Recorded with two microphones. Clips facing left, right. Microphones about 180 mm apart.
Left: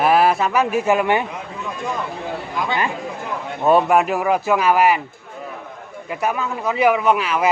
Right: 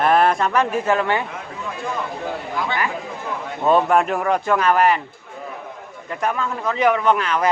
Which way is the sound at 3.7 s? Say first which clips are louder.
Left 1 dB; 10° left (ahead or behind).